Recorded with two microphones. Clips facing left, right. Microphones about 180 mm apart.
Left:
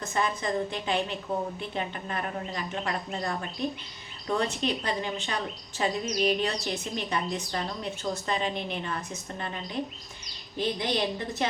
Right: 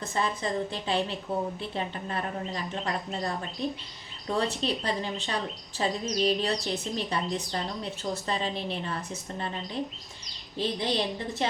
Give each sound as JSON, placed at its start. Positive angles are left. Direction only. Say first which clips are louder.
{"t": 0.0, "sound": "a woman's voice", "louder": "left 1 dB", "side_deg": -30}